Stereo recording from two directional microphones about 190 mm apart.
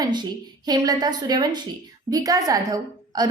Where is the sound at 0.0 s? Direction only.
20° right (ahead or behind).